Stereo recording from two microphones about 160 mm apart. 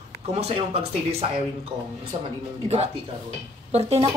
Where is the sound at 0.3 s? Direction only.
40° right (ahead or behind).